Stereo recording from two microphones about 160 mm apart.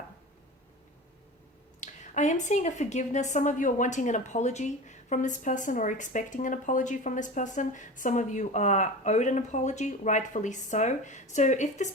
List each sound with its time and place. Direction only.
1.8 s a woman's voice: 50° left (ahead or behind)